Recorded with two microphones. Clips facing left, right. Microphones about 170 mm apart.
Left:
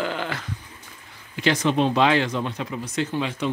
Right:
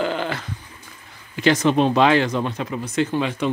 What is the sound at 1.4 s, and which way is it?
Speech, 45° right (ahead or behind).